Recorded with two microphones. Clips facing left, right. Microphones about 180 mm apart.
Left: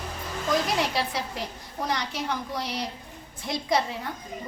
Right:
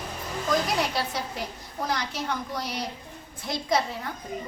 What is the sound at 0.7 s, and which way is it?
A woman's voice, centre (ahead or behind).